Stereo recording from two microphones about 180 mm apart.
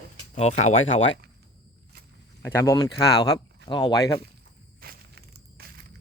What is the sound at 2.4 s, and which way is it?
Speech, 15° left (ahead or behind).